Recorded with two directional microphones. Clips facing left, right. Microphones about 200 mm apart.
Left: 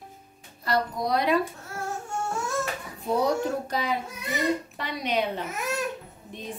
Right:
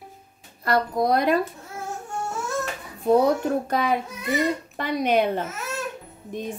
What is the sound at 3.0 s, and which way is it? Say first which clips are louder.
A woman's voice: right 6 dB; 55° right (ahead or behind).